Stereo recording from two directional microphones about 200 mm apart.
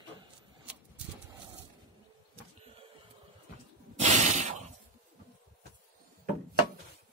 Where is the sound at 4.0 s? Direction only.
35° right (ahead or behind).